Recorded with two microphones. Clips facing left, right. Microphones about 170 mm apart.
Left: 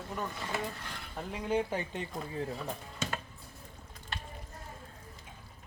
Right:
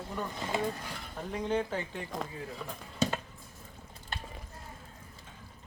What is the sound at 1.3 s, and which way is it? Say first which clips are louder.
Speech: even; 10° left (ahead or behind).